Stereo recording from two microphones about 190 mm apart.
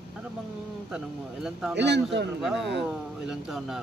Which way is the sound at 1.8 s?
65° right (ahead or behind).